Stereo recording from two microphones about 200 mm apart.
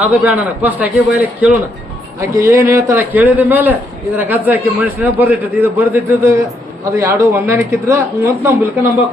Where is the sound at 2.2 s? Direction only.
15° right (ahead or behind).